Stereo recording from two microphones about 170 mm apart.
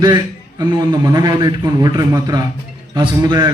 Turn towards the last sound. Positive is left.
turn(degrees=-25)  # may be behind; listen again after turning